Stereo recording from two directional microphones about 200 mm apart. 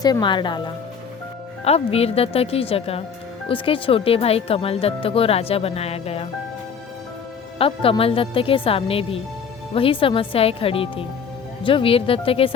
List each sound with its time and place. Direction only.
0.0 s speech: 20° left (ahead or behind)
7.6 s speech: 30° left (ahead or behind)